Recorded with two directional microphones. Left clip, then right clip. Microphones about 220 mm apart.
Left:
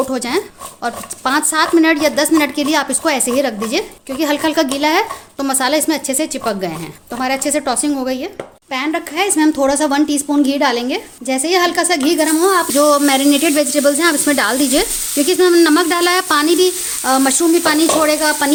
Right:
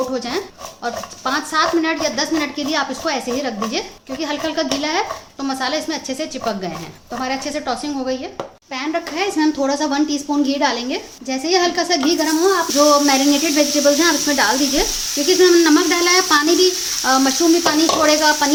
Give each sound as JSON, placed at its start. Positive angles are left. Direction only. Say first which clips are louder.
{"t": 0.1, "sound": "speech", "louder": "left 4 dB", "side_deg": 50}
{"t": 8.7, "sound": "a woman's voice", "louder": "left 4 dB", "side_deg": 40}
{"t": 17.0, "sound": "sizzle", "louder": "left 2 dB", "side_deg": 25}